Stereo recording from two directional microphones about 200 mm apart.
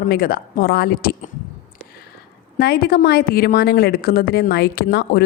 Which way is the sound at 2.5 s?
50° left (ahead or behind).